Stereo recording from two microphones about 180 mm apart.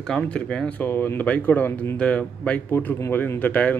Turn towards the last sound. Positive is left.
turn(degrees=10)  # may be behind; listen again after turning